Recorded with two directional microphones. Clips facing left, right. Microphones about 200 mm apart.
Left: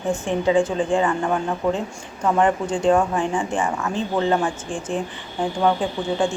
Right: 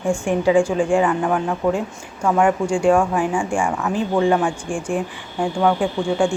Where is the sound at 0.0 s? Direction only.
10° right (ahead or behind).